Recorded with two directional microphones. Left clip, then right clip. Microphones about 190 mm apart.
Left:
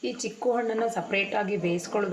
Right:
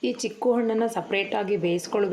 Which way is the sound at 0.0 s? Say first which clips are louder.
Right 3 dB; 50° right (ahead or behind).